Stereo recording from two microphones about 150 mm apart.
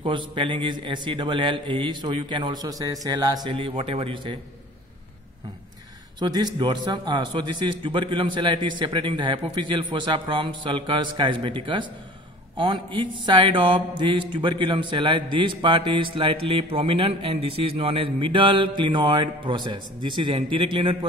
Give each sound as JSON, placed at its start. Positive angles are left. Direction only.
{"t": 0.0, "sound": "speech", "side_deg": -35}
{"t": 6.1, "sound": "speech", "side_deg": -30}